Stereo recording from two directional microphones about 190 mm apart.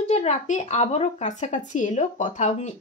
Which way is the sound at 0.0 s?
35° left (ahead or behind).